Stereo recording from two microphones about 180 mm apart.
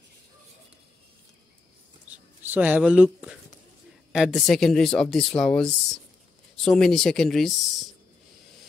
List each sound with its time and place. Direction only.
2.4 s speech: 10° right (ahead or behind)